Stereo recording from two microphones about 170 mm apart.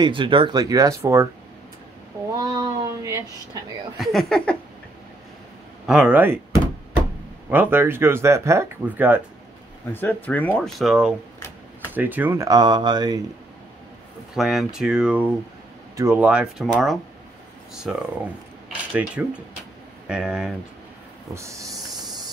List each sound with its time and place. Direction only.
0.0 s speech: 30° right (ahead or behind)
2.3 s a sound: 20° right (ahead or behind)
4.0 s speech: centre (ahead or behind)
5.9 s speech: 5° right (ahead or behind)
7.4 s speech: 10° right (ahead or behind)
9.9 s speech: 10° left (ahead or behind); by 13.2 s 25° right (ahead or behind)
14.3 s speech: centre (ahead or behind)
21.4 s speech: 20° right (ahead or behind)